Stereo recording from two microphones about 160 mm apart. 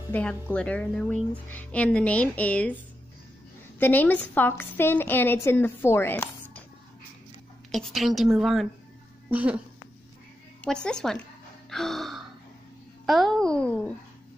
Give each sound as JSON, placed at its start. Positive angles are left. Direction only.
{"t": 0.1, "sound": "a woman's voice", "side_deg": 10}
{"t": 3.8, "sound": "a woman's voice", "side_deg": 10}
{"t": 7.7, "sound": "a woman's voice", "side_deg": 0}
{"t": 10.6, "sound": "a woman's voice", "side_deg": 5}
{"t": 11.7, "sound": "gasp", "side_deg": 0}
{"t": 13.0, "sound": "a woman's voice", "side_deg": 0}